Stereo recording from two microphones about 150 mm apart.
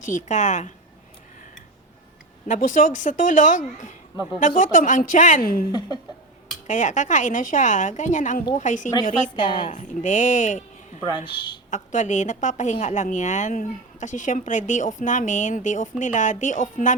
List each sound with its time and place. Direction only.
0.0 s a woman's voice: 55° left (ahead or behind)
2.5 s a woman's voice: 60° left (ahead or behind)
5.4 s a woman's voice: 75° left (ahead or behind)
6.7 s a woman's voice: 55° left (ahead or behind)
11.3 s a woman's voice: 30° left (ahead or behind)
11.7 s a woman's voice: 55° left (ahead or behind)